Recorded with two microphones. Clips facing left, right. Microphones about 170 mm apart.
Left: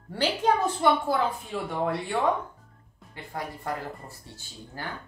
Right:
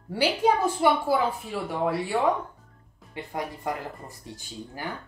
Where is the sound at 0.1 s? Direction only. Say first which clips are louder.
Right 2 dB; 10° right (ahead or behind).